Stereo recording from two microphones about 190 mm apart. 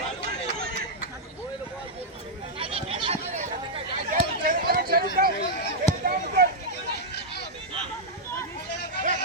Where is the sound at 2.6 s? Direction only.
30° right (ahead or behind).